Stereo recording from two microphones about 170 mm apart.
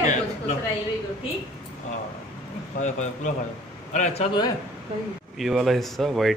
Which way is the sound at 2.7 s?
45° left (ahead or behind).